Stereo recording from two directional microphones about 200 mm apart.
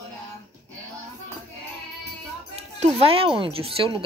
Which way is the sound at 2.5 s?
30° right (ahead or behind).